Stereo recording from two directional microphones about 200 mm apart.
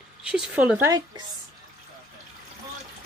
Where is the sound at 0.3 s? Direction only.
5° right (ahead or behind).